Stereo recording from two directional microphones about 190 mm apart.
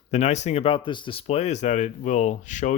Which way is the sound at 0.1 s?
35° left (ahead or behind).